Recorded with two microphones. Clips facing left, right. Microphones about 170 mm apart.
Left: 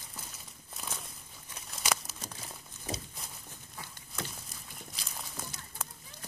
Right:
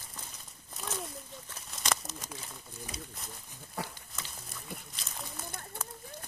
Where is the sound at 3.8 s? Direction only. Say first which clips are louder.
Right 10 dB; 70° right (ahead or behind).